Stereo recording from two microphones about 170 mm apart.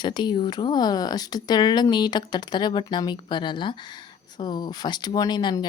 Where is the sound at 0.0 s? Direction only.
25° left (ahead or behind).